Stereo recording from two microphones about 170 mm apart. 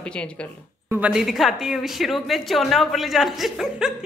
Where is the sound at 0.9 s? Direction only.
5° right (ahead or behind).